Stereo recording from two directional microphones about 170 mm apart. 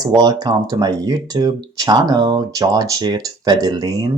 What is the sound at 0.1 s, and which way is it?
Speech, 25° right (ahead or behind).